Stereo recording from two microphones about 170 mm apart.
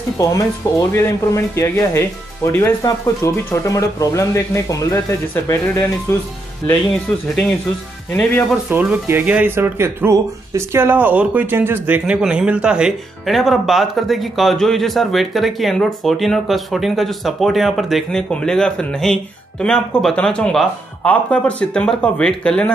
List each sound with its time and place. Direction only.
0.2 s speech: 20° left (ahead or behind)
6.7 s speech: centre (ahead or behind)
8.6 s speech: 15° right (ahead or behind); by 22.7 s 5° left (ahead or behind)